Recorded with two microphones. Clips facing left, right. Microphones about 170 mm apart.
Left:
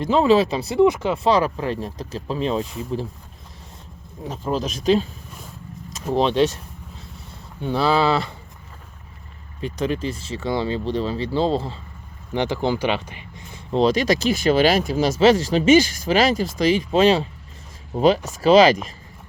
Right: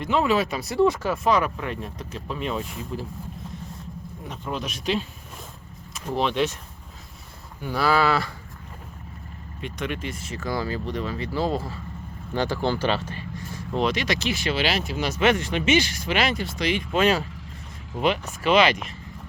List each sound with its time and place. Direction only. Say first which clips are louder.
0.0 s speech: left 6 dB; 30° left (ahead or behind)
4.3 s speech: left 7 dB; 30° left (ahead or behind)
6.1 s speech: left 5 dB; 35° left (ahead or behind)
7.6 s speech: left 3 dB; 25° left (ahead or behind)
9.6 s speech: left 6 dB; 35° left (ahead or behind); by 13.6 s 20° left (ahead or behind)
13.7 s speech: left 7 dB; 35° left (ahead or behind)